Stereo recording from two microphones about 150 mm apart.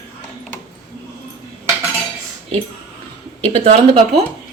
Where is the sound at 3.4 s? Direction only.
40° right (ahead or behind).